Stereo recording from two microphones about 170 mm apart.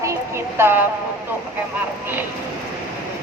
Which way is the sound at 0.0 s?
15° right (ahead or behind).